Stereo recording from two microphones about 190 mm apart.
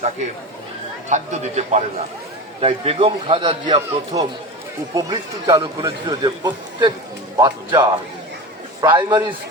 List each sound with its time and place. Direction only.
1.1 s a man's voice: 35° right (ahead or behind)